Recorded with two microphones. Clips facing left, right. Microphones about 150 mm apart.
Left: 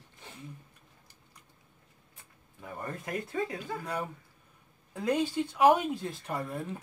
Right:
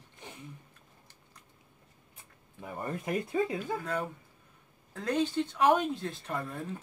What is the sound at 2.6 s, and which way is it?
Speech, 20° right (ahead or behind).